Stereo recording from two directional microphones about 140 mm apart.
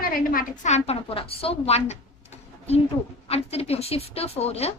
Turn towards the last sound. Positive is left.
turn(degrees=50)  # may be behind; listen again after turning